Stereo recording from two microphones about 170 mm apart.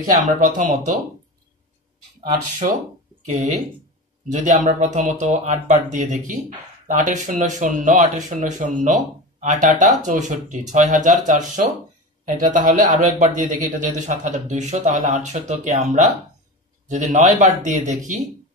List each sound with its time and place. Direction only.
0.1 s speech: 50° right (ahead or behind)
2.6 s speech: 45° right (ahead or behind)
16.9 s speech: 45° right (ahead or behind)